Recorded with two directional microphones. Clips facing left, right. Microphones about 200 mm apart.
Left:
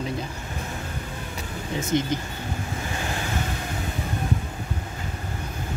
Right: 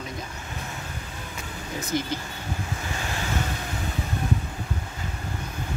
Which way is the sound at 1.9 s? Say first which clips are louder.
Left 4 dB; 20° left (ahead or behind).